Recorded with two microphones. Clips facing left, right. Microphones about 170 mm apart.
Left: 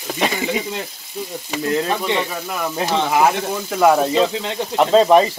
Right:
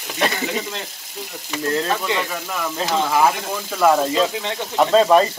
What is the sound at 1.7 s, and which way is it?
Speech, 25° left (ahead or behind).